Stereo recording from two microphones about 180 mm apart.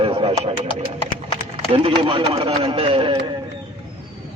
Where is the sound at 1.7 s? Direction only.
30° right (ahead or behind).